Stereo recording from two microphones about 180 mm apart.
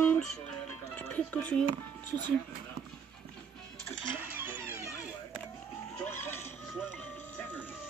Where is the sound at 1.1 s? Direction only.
10° left (ahead or behind).